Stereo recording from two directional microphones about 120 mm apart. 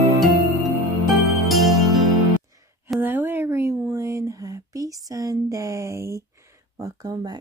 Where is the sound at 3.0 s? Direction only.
15° right (ahead or behind).